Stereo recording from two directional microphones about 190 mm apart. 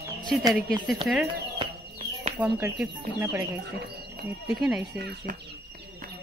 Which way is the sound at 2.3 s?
5° right (ahead or behind).